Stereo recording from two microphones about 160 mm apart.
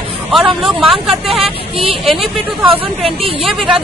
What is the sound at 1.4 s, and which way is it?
Speech, 35° right (ahead or behind).